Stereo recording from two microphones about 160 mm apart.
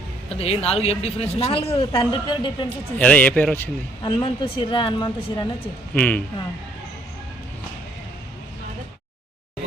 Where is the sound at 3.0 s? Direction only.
10° left (ahead or behind).